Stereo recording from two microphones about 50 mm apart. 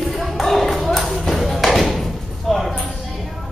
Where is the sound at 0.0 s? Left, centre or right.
Centre.